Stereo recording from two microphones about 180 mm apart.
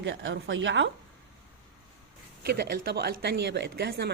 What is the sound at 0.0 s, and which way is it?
Speech, 90° right.